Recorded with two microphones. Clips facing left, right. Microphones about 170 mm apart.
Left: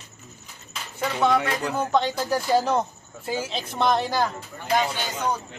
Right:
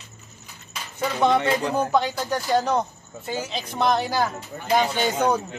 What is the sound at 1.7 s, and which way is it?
A man's voice, 10° right (ahead or behind).